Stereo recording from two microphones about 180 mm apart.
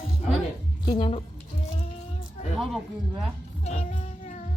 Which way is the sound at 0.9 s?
25° left (ahead or behind).